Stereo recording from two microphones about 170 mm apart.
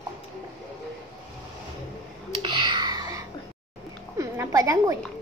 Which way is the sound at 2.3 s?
30° right (ahead or behind).